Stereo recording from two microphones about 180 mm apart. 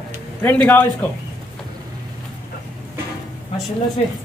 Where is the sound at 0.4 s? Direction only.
10° left (ahead or behind).